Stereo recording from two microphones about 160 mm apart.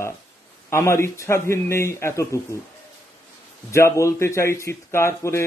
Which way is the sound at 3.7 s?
20° left (ahead or behind).